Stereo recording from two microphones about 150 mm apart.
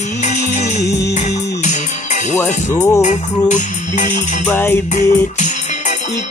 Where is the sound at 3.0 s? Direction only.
55° left (ahead or behind).